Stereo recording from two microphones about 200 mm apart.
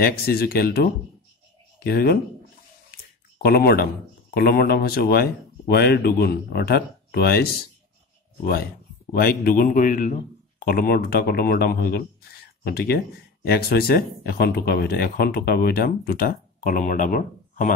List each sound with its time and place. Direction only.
0.0 s speech: 50° left (ahead or behind)
1.9 s speech: 50° left (ahead or behind)
2.9 s a sound: 50° left (ahead or behind)
3.4 s speech: 50° left (ahead or behind)